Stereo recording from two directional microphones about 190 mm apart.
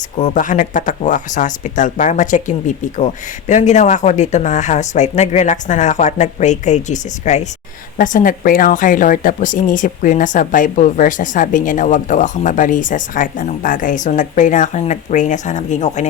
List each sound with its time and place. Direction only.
0.2 s speech: 40° left (ahead or behind)